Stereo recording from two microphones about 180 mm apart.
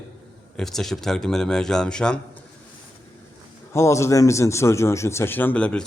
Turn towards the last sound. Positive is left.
turn(degrees=5)  # may be behind; listen again after turning